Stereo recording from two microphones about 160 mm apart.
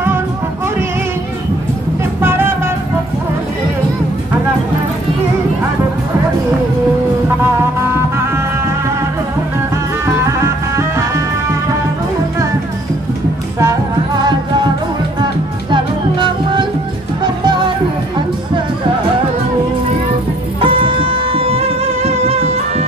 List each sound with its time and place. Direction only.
2.2 s music: 15° right (ahead or behind)
10.0 s music: 15° right (ahead or behind)
15.7 s music: 30° right (ahead or behind)
20.6 s music: 35° right (ahead or behind)